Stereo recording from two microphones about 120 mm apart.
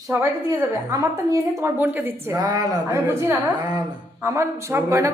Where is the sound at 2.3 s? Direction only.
30° right (ahead or behind).